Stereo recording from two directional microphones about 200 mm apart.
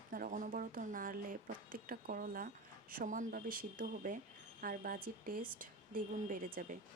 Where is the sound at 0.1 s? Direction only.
45° right (ahead or behind).